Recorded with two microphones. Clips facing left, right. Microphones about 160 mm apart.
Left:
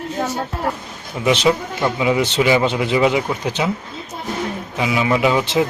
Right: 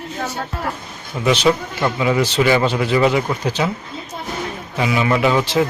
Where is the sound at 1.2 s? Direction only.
20° left (ahead or behind).